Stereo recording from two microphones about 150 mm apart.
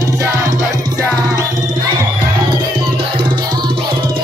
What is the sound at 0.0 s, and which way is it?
Music, 20° right (ahead or behind).